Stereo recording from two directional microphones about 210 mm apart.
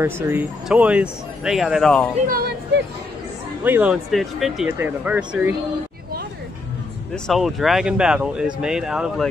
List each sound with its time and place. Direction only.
0.0 s speech: 10° right (ahead or behind)
2.2 s speech: 45° right (ahead or behind)
3.6 s speech: 5° right (ahead or behind)
7.2 s speech: centre (ahead or behind)